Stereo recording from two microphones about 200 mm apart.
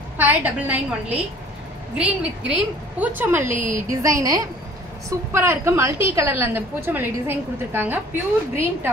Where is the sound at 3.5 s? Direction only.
40° right (ahead or behind).